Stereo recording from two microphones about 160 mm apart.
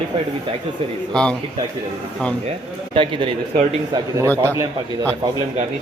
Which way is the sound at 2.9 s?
30° right (ahead or behind).